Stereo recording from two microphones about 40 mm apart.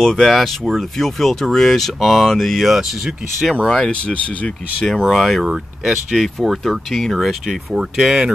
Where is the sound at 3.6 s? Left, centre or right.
Centre.